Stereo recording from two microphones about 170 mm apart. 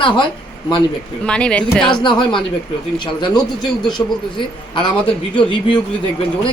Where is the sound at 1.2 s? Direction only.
5° left (ahead or behind).